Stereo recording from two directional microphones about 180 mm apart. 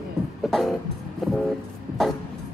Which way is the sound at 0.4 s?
Centre (ahead or behind).